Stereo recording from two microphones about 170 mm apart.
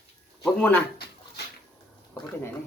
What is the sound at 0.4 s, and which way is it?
Speech, 5° left (ahead or behind).